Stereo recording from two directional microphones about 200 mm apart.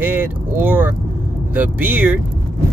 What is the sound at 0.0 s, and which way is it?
Vehicle, 10° right (ahead or behind).